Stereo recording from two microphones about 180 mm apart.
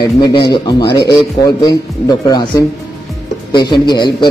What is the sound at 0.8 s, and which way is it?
Speech, 65° left (ahead or behind).